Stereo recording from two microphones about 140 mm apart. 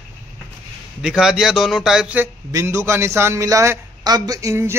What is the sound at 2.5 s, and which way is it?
A man's voice, 20° right (ahead or behind).